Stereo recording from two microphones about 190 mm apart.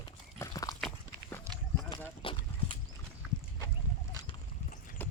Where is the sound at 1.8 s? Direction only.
20° left (ahead or behind).